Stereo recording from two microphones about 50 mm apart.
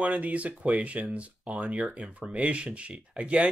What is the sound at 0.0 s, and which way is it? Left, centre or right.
Speech, right.